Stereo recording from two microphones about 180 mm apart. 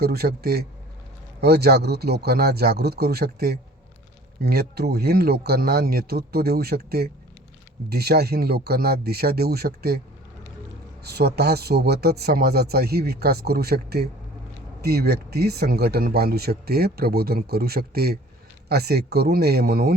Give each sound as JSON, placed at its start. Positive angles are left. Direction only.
{"t": 0.0, "sound": "speech", "side_deg": -60}
{"t": 11.0, "sound": "speech", "side_deg": -65}